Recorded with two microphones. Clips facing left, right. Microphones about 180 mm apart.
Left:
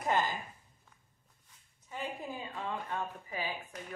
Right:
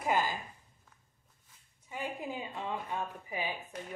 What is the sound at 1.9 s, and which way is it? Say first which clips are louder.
Speech: right 2 dB; 15° right (ahead or behind).